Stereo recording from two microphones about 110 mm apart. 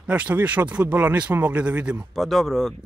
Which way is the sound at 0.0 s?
15° right (ahead or behind).